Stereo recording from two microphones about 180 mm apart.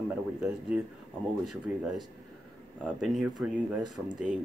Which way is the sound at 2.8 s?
5° right (ahead or behind).